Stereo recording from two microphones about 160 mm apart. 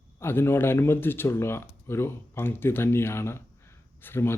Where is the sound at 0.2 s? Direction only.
15° left (ahead or behind).